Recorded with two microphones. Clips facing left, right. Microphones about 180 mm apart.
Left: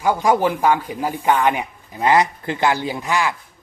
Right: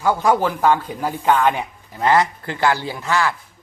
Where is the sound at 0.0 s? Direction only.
15° left (ahead or behind).